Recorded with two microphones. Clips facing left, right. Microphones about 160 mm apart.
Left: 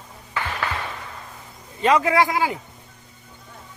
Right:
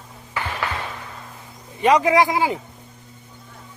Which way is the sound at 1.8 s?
15° right (ahead or behind).